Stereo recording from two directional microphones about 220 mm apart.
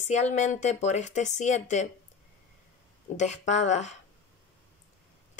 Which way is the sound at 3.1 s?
30° left (ahead or behind).